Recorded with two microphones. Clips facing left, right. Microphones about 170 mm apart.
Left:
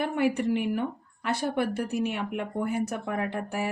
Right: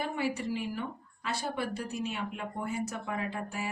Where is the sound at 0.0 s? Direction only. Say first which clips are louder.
Left 7 dB; 60° left (ahead or behind).